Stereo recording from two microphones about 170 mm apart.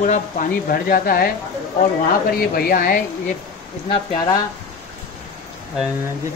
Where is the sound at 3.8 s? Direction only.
25° left (ahead or behind).